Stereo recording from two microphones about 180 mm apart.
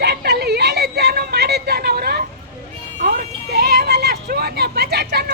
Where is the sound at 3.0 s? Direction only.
55° right (ahead or behind).